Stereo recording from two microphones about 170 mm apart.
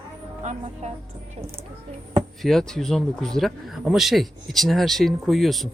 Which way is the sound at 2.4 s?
5° left (ahead or behind).